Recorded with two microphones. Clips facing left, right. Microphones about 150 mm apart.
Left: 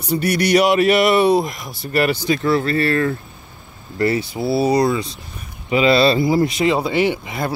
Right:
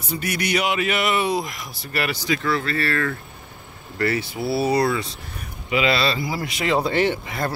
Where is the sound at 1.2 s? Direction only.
60° left (ahead or behind).